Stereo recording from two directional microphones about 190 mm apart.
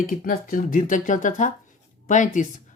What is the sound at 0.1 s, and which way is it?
Speech, 45° left (ahead or behind).